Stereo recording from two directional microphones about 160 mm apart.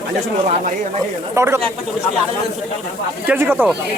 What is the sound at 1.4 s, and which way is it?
Speech, 15° right (ahead or behind).